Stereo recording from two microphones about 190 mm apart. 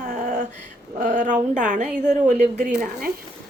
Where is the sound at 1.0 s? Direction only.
45° right (ahead or behind).